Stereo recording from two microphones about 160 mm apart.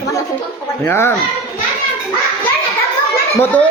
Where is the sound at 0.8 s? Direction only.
15° left (ahead or behind).